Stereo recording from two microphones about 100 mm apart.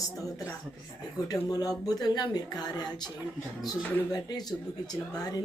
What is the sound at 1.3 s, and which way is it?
A woman's voice, 40° left (ahead or behind).